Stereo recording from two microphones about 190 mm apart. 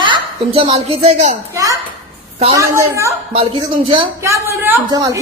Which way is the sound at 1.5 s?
20° right (ahead or behind).